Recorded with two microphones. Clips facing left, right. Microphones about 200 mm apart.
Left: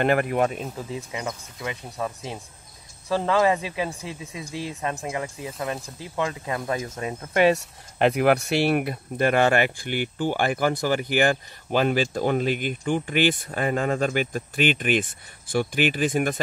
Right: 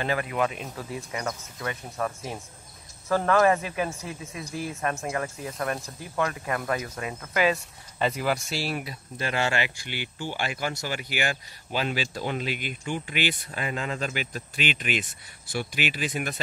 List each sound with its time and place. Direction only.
0.0 s speech: 55° left (ahead or behind)
0.7 s speech: 20° left (ahead or behind)
7.5 s speech: 60° left (ahead or behind)